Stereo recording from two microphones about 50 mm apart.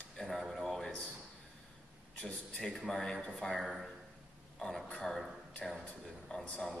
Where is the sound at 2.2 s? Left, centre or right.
Centre.